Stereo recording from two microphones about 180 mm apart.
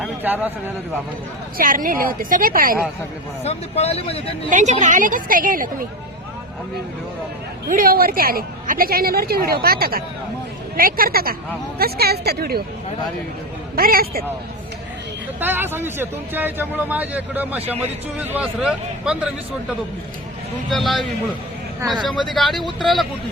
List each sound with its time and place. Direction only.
0.0 s speech: 10° right (ahead or behind)
1.5 s a woman's voice: 50° right (ahead or behind)
3.4 s speech: 35° left (ahead or behind)
4.4 s a woman's voice: 40° right (ahead or behind)
7.7 s a woman's voice: 55° right (ahead or behind)
13.7 s a woman's voice: 55° right (ahead or behind)
15.4 s a man's voice: 10° right (ahead or behind)
20.7 s a man's voice: centre (ahead or behind)
21.8 s speech: 25° right (ahead or behind)
22.3 s a man's voice: centre (ahead or behind)